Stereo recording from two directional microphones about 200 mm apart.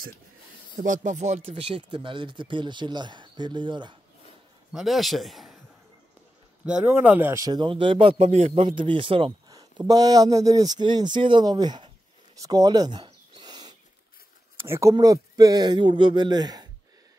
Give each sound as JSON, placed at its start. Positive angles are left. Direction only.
{"t": 0.7, "sound": "speech", "side_deg": -40}
{"t": 4.7, "sound": "a man's voice", "side_deg": 0}
{"t": 6.6, "sound": "speech", "side_deg": -5}
{"t": 12.4, "sound": "bird", "side_deg": -20}
{"t": 14.7, "sound": "speech", "side_deg": -15}